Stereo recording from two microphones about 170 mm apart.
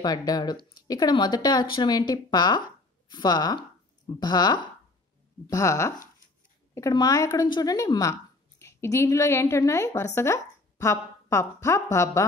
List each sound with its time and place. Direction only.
0.0 s speech: 20° left (ahead or behind)